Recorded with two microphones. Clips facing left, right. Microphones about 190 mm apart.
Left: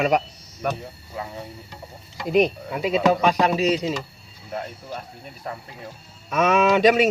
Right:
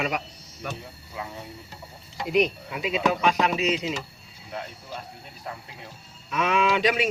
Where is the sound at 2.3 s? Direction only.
40° left (ahead or behind).